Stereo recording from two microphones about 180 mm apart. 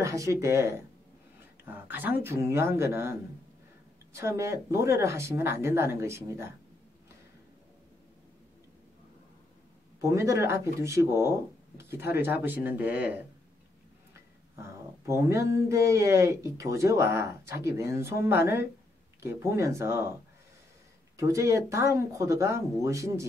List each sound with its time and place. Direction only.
0.0 s speech: 15° right (ahead or behind)
1.9 s speech: 10° right (ahead or behind)
10.0 s speech: 15° right (ahead or behind)
15.0 s speech: 15° right (ahead or behind)
21.2 s speech: 15° right (ahead or behind)